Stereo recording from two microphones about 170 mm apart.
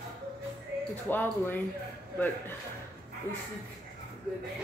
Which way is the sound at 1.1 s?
10° left (ahead or behind).